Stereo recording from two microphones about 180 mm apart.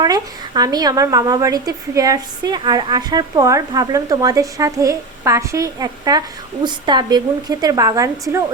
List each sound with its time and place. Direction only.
0.0 s a woman's voice: 20° right (ahead or behind)